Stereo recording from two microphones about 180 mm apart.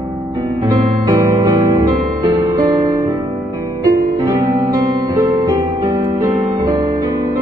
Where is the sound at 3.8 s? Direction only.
20° right (ahead or behind).